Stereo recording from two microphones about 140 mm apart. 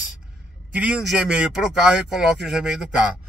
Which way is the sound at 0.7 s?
5° right (ahead or behind).